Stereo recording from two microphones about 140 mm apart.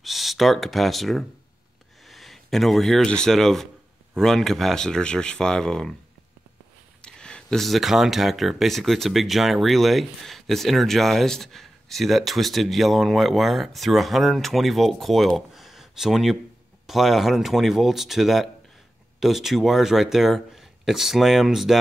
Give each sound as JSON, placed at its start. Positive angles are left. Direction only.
{"t": 0.0, "sound": "speech", "side_deg": 0}
{"t": 7.0, "sound": "speech", "side_deg": 5}